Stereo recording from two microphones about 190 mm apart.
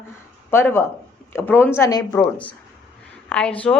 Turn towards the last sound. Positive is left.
turn(degrees=5)  # may be behind; listen again after turning